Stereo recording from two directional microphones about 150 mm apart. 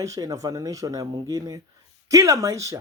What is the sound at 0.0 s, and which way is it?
A man's voice, 20° right (ahead or behind).